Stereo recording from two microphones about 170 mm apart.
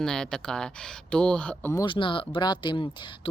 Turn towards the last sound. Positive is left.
turn(degrees=30)  # may be behind; listen again after turning